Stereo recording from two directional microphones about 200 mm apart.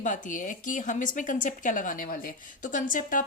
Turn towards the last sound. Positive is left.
turn(degrees=40)  # may be behind; listen again after turning